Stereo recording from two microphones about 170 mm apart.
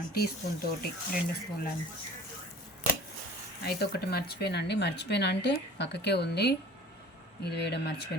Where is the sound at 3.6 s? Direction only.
65° left (ahead or behind).